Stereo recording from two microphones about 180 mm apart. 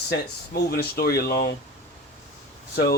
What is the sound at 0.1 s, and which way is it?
Speech, 60° left (ahead or behind).